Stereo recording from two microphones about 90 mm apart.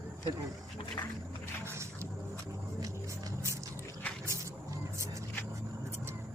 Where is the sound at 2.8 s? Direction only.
40° right (ahead or behind).